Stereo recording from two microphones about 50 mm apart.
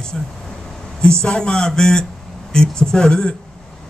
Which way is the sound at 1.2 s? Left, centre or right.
Centre.